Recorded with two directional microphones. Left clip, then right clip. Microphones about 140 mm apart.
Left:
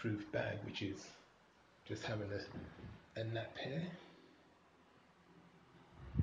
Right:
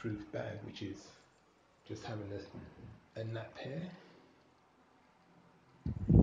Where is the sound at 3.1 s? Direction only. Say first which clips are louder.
Even; 30° right (ahead or behind).